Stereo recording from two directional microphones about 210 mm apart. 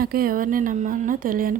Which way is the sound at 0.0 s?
45° right (ahead or behind).